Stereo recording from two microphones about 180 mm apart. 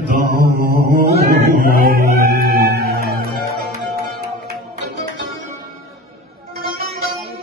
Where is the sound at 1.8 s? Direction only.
55° right (ahead or behind).